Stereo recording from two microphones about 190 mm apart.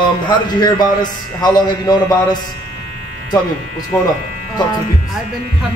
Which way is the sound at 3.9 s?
10° left (ahead or behind).